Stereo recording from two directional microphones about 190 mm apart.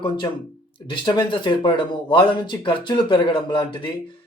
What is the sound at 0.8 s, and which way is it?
Speech, 25° left (ahead or behind).